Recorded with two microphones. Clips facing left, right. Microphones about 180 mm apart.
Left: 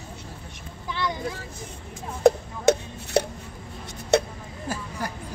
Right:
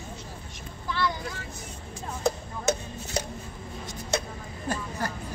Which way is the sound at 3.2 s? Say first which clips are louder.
Left 9 dB; 60° left (ahead or behind).